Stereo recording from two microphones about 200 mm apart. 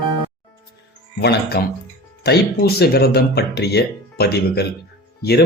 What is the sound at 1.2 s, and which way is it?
Speech, 55° left (ahead or behind).